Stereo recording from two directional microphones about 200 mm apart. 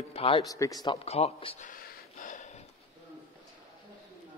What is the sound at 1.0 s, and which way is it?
Speech, 30° left (ahead or behind).